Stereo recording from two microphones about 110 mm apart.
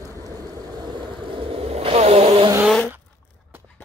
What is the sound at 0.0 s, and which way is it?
Vehicle, 30° right (ahead or behind).